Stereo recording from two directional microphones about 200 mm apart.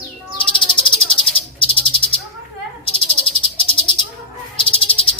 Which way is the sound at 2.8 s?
30° left (ahead or behind).